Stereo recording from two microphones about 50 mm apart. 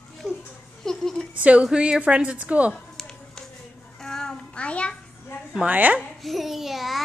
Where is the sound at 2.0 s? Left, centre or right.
Right.